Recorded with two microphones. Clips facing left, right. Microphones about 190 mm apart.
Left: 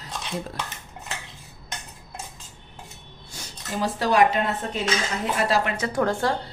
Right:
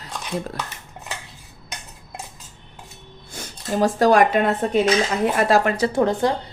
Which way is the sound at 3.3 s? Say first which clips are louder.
Right 7 dB; 50° right (ahead or behind).